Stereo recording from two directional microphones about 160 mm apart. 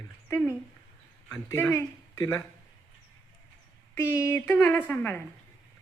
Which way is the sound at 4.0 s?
15° left (ahead or behind).